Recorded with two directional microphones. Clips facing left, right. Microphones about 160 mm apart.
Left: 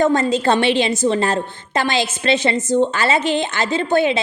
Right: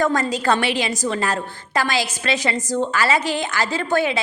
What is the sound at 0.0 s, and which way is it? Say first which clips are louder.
A woman's voice: left 4 dB; 25° left (ahead or behind).